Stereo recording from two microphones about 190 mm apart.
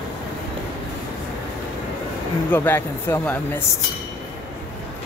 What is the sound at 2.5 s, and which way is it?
Speech, 10° left (ahead or behind).